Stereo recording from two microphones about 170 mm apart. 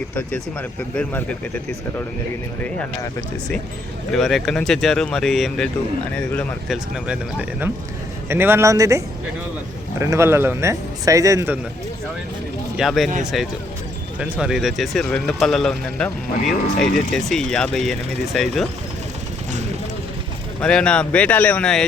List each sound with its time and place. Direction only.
0.9 s speech: 10° left (ahead or behind)
2.6 s speech: 10° left (ahead or behind)
4.1 s speech: centre (ahead or behind)
6.9 s speech: 5° right (ahead or behind)
12.7 s speech: centre (ahead or behind)
20.6 s speech: 5° left (ahead or behind)